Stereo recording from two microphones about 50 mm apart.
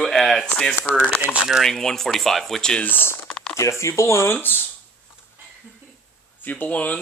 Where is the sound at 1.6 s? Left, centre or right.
Centre.